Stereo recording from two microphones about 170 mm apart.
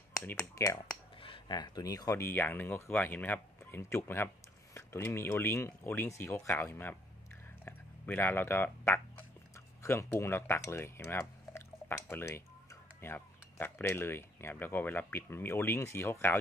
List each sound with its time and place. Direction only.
0.1 s speech: 20° left (ahead or behind)
7.6 s a sound: 10° left (ahead or behind)
9.8 s speech: 15° left (ahead or behind)